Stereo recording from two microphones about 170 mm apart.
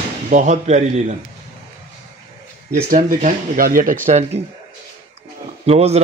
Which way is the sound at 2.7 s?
55° right (ahead or behind).